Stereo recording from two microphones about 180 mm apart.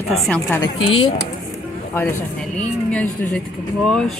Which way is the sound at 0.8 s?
30° left (ahead or behind).